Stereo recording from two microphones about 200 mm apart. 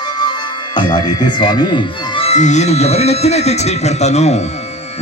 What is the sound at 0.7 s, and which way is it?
Speech, 20° left (ahead or behind).